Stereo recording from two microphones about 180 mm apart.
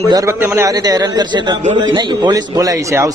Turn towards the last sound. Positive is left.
turn(degrees=-20)  # may be behind; listen again after turning